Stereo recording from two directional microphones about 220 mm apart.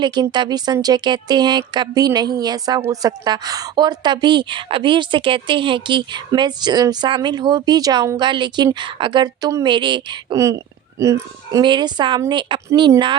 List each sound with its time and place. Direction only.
0.0 s speech: 20° right (ahead or behind)